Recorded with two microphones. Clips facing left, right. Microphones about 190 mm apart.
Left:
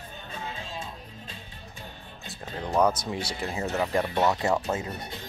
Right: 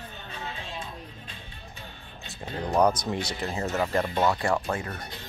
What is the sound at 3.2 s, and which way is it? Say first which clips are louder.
Speech: even; 15° left (ahead or behind).